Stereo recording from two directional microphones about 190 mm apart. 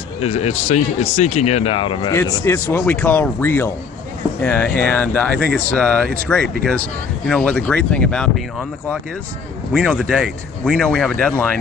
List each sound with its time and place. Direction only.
0.2 s speech: 35° left (ahead or behind); by 11.4 s 5° left (ahead or behind)